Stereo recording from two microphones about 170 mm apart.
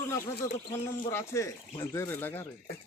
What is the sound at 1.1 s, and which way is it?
Speech, 15° left (ahead or behind).